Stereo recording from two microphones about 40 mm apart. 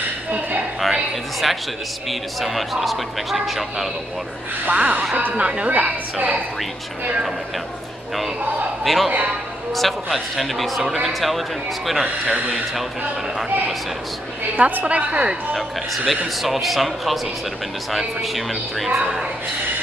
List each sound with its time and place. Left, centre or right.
0.3 s a sound: right
0.7 s a man's voice: centre
4.6 s speech: right
5.4 s a woman's voice: right
5.7 s a woman's voice: right
8.8 s a man's voice: centre
12.3 s speech: right
14.6 s a woman's voice: right
16.4 s a man's voice: centre